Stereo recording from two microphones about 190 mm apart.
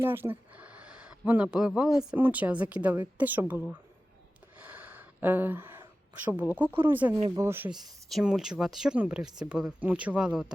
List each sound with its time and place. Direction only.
0.0 s speech: 10° right (ahead or behind)
4.5 s gasp: 10° right (ahead or behind)
6.2 s speech: 10° right (ahead or behind)
7.2 s speech: 25° right (ahead or behind)
7.4 s speech: 10° right (ahead or behind)